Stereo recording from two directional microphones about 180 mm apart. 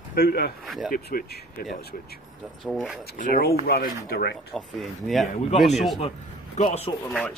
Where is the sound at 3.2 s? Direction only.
60° left (ahead or behind).